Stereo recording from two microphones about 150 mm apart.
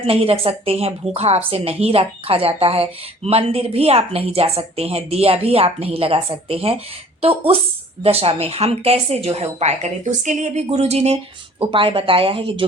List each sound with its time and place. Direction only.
0.0 s a woman's voice: 40° right (ahead or behind)